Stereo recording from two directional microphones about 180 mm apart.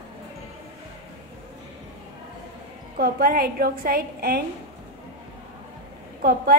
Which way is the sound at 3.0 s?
55° right (ahead or behind).